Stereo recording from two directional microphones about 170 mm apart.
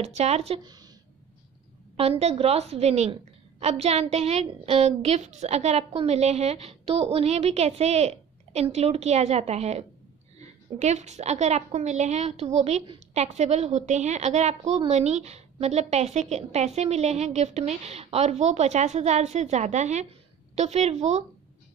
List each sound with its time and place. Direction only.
0.0 s a woman's voice: 40° right (ahead or behind)
2.0 s a woman's voice: 35° right (ahead or behind)